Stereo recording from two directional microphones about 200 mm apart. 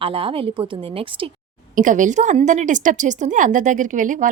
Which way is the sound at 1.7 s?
40° right (ahead or behind).